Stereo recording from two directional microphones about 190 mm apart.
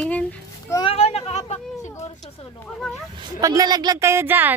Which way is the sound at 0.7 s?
30° left (ahead or behind).